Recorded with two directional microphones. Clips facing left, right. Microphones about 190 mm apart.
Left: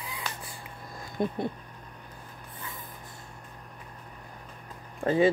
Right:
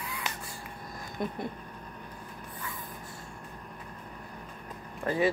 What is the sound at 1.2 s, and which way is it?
Speech, 25° left (ahead or behind).